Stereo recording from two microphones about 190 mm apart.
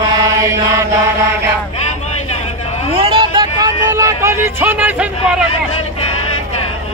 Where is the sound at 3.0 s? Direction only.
25° right (ahead or behind); by 5.4 s 10° right (ahead or behind).